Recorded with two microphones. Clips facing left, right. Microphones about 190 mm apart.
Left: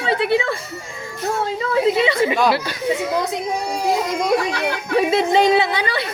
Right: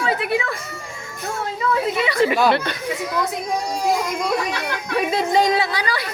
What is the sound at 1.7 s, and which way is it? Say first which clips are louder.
Speech: left 5 dB; 25° left (ahead or behind).